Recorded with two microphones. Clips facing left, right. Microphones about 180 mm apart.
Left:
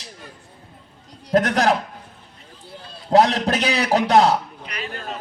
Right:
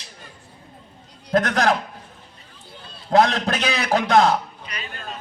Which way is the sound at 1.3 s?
35° left (ahead or behind).